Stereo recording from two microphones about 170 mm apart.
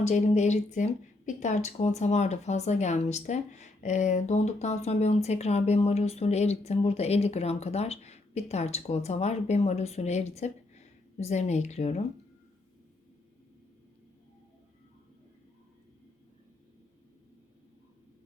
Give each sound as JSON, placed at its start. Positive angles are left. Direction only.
{"t": 0.0, "sound": "speech", "side_deg": 40}